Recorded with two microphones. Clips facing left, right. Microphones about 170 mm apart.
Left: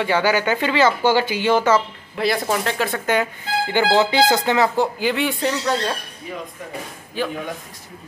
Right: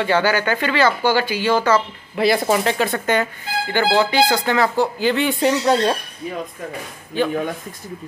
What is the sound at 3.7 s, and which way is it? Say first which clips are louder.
Speech: even; 15° left (ahead or behind).